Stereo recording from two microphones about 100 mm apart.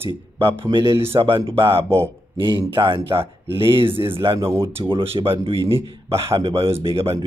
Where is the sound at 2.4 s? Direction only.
55° right (ahead or behind).